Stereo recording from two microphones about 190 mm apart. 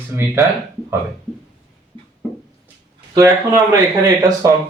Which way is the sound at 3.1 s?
15° right (ahead or behind).